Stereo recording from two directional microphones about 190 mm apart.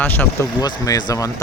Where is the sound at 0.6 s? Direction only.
20° left (ahead or behind).